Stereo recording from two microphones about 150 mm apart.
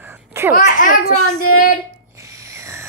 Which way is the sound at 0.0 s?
15° right (ahead or behind).